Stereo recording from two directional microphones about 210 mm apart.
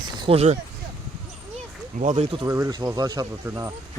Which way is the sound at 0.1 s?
25° right (ahead or behind).